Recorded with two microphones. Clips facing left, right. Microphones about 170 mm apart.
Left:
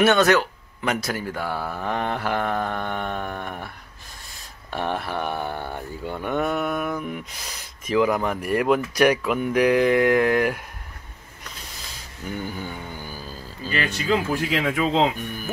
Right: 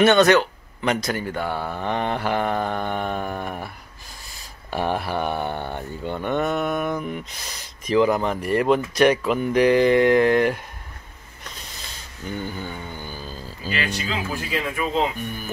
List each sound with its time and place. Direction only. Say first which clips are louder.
0.0 s speech: right 2 dB; 5° left (ahead or behind)
12.3 s speech: right 1 dB; 10° left (ahead or behind)
13.9 s speech: left 6 dB; 55° left (ahead or behind)
14.5 s speech: left 1 dB; 85° left